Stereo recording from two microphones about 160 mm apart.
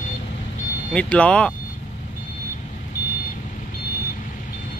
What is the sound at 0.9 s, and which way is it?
Speech, 5° left (ahead or behind).